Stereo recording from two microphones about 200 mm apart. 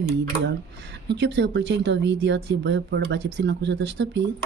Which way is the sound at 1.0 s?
60° right (ahead or behind).